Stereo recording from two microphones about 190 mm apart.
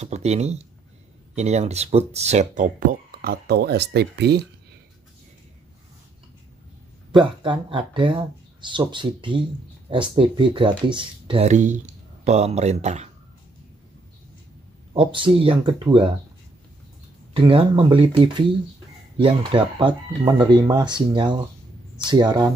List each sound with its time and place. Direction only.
0.0 s speech: 35° right (ahead or behind); by 4.5 s 60° right (ahead or behind)
7.4 s speech: 25° right (ahead or behind)
15.0 s speech: 25° right (ahead or behind)
17.3 s speech: 30° right (ahead or behind)